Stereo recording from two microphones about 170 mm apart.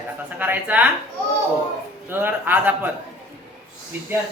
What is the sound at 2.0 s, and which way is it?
Speech, 10° right (ahead or behind).